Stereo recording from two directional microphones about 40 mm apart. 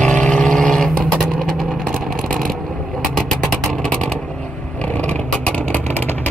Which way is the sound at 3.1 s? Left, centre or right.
Centre.